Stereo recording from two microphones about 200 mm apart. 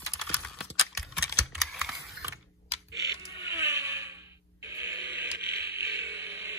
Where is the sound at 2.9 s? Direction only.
15° right (ahead or behind).